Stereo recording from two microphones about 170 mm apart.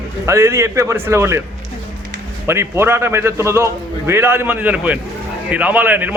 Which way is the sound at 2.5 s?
15° right (ahead or behind).